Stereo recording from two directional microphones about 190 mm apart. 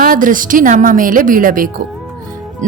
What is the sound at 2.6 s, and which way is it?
Music, 40° right (ahead or behind).